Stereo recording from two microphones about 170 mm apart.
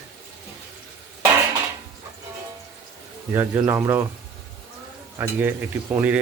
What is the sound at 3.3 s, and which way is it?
Speech, 10° right (ahead or behind).